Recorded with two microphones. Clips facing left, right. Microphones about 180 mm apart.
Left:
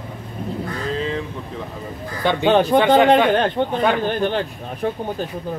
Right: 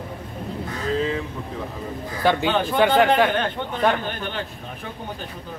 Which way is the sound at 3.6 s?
50° left (ahead or behind).